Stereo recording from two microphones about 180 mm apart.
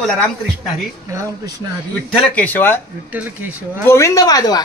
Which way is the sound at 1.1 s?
15° right (ahead or behind).